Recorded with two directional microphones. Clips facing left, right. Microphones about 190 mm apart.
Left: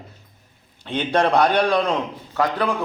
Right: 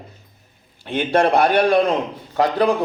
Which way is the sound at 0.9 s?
10° right (ahead or behind).